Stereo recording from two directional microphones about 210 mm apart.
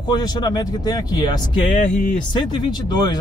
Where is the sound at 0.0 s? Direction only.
20° left (ahead or behind).